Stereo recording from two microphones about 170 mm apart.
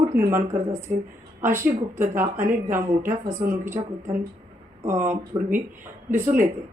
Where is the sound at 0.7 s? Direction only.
15° right (ahead or behind).